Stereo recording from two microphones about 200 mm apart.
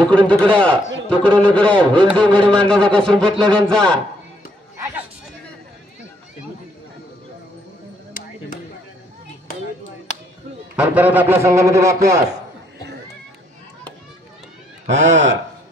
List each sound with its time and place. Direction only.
0.0 s a sound: 5° left (ahead or behind)
10.8 s a man's voice: 10° right (ahead or behind)
14.9 s a man's voice: 35° right (ahead or behind)